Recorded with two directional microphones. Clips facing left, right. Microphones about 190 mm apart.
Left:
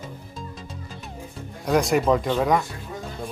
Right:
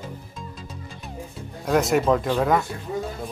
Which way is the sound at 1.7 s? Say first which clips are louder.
Even; centre (ahead or behind).